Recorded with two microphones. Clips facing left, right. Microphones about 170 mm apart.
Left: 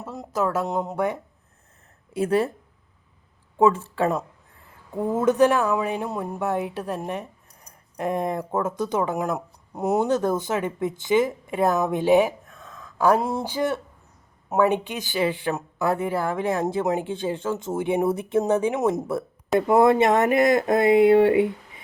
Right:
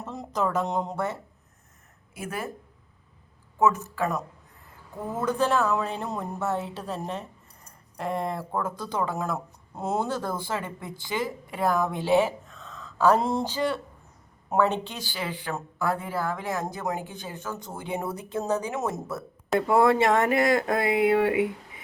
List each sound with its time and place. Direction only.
0.0 s speech: 5° left (ahead or behind)
2.1 s speech: 35° left (ahead or behind)
3.6 s a woman's voice: 30° left (ahead or behind)